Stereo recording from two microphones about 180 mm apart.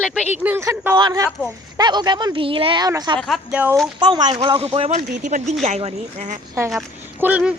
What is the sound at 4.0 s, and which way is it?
Speech, 25° right (ahead or behind).